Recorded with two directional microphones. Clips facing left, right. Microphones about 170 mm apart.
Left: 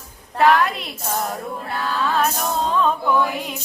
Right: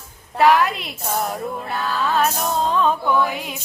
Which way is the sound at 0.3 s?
Centre (ahead or behind).